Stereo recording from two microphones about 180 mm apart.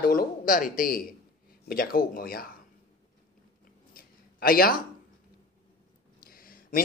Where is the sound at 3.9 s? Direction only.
55° left (ahead or behind).